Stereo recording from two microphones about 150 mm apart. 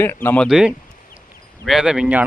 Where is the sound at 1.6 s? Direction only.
Centre (ahead or behind).